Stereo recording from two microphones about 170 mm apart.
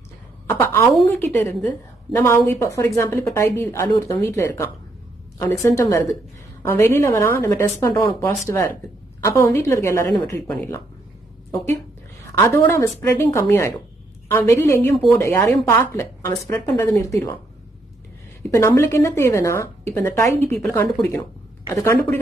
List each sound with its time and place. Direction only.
0.5 s a sound: 15° left (ahead or behind)
1.2 s a woman's voice: 10° left (ahead or behind)
12.4 s a woman's voice: 15° left (ahead or behind)
18.5 s a woman's voice: 15° left (ahead or behind)